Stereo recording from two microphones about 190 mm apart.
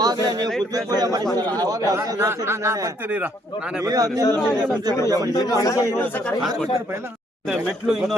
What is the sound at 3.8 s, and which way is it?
Speech, 20° right (ahead or behind).